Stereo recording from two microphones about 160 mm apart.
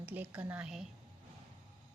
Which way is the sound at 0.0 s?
10° right (ahead or behind).